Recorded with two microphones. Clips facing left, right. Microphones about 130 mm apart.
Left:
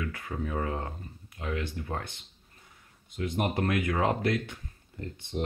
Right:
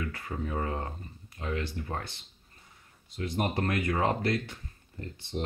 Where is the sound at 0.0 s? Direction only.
Centre (ahead or behind).